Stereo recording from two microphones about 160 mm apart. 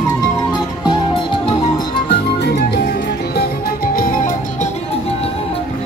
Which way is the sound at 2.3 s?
90° left.